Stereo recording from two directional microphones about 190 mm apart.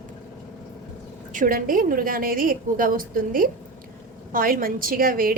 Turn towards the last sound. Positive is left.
turn(degrees=-50)  # may be behind; listen again after turning